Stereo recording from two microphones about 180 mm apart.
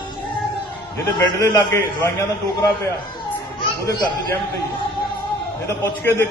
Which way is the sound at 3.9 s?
20° left (ahead or behind).